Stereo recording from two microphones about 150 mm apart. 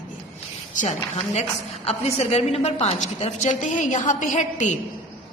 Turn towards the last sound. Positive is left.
turn(degrees=55)  # may be behind; listen again after turning